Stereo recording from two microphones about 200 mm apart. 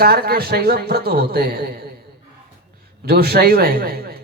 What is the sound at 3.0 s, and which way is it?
Speech, 50° right (ahead or behind).